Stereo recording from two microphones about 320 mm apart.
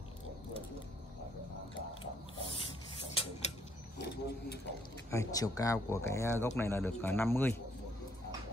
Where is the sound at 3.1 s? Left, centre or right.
Centre.